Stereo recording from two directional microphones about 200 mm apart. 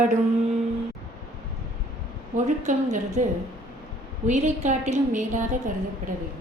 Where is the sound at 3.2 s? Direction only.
40° right (ahead or behind).